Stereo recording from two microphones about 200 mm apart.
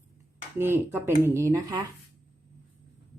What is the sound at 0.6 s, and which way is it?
Speech, 10° right (ahead or behind).